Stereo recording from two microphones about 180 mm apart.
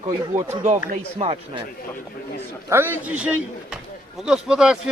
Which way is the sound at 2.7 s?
10° right (ahead or behind).